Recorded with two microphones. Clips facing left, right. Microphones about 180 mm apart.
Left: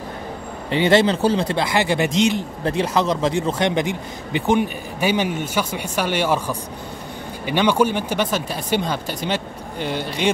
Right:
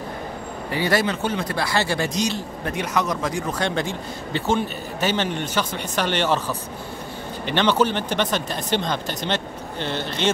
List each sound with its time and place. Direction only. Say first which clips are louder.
0.7 s speech: left 6 dB; 25° left (ahead or behind)